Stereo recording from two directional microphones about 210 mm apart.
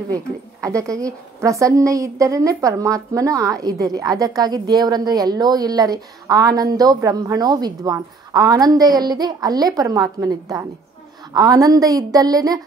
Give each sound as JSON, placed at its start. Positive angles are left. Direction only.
{"t": 0.1, "sound": "a woman's voice", "side_deg": -15}